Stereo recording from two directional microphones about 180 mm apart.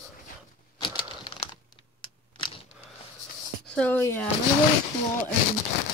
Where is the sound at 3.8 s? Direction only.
10° left (ahead or behind).